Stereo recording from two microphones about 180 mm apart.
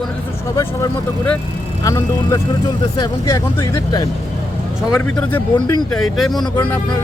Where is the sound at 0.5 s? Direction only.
15° left (ahead or behind).